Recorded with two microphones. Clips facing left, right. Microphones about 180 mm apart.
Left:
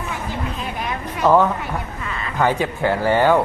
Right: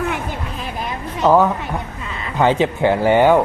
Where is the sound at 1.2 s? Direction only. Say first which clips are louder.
Right 2 dB; 10° right (ahead or behind).